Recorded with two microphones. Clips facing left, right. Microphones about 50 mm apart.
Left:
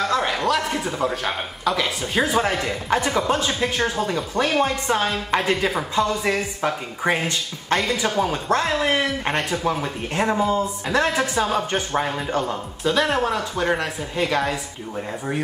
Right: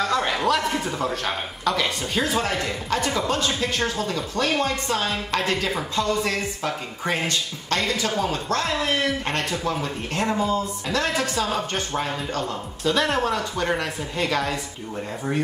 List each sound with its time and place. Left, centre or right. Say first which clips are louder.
0.0 s a man's voice: left 1 dB; centre
2.2 s speech: left 3 dB; centre
12.8 s speech: left 2 dB; centre